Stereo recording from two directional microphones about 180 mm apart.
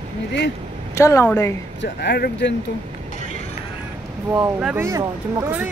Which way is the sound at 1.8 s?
65° left (ahead or behind).